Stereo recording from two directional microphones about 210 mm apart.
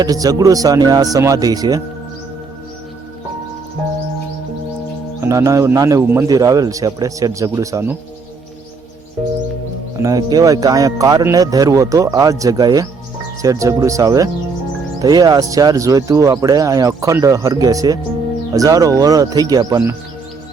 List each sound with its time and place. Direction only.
0.0 s speech: 20° right (ahead or behind)
5.2 s speech: 15° right (ahead or behind)
10.0 s speech: 15° right (ahead or behind)